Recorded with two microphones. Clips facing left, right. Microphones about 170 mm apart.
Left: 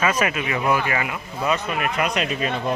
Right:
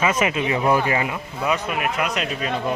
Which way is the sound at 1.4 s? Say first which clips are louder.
Even; 10° right (ahead or behind).